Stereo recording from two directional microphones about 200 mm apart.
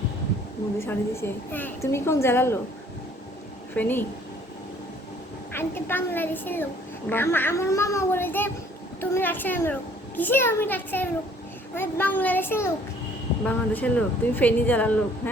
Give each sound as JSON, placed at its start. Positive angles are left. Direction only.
{"t": 0.8, "sound": "a woman's voice", "side_deg": 10}
{"t": 3.8, "sound": "a woman's voice", "side_deg": 10}
{"t": 5.5, "sound": "a woman's voice", "side_deg": 10}